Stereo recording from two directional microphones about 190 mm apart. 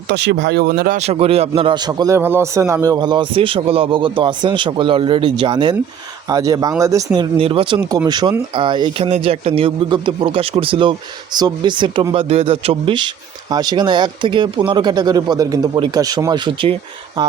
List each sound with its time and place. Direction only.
0.1 s speech: 65° right (ahead or behind)
0.9 s speech: 35° right (ahead or behind)